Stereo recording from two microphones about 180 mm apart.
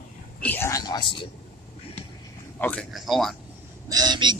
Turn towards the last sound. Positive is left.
turn(degrees=-25)  # may be behind; listen again after turning